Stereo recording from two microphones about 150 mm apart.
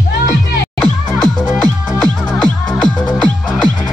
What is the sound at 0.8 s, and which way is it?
Music, 5° left (ahead or behind).